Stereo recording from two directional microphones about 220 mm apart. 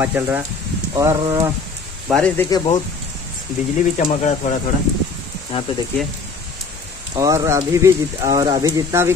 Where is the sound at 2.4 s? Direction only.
20° left (ahead or behind).